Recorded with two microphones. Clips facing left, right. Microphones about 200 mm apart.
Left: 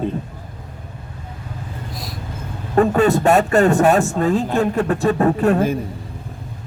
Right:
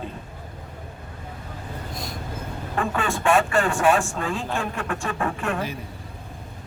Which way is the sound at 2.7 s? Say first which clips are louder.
Left 12 dB; 40° left (ahead or behind).